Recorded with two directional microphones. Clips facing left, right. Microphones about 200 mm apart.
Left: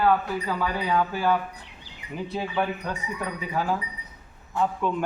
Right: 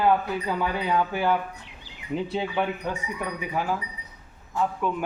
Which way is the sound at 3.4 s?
10° right (ahead or behind).